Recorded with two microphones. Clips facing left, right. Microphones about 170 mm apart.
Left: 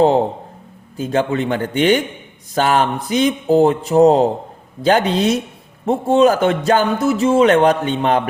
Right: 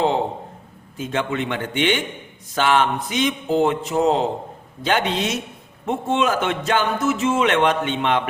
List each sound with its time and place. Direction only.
0.9 s speech: 35° left (ahead or behind)